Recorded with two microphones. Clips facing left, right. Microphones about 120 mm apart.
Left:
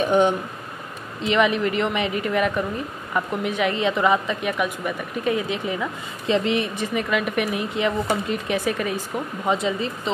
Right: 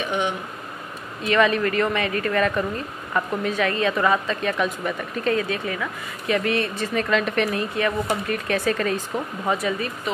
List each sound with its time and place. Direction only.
0.0 s a sound: 40° left (ahead or behind)
1.2 s speech: 15° left (ahead or behind)
9.6 s speech: 25° left (ahead or behind)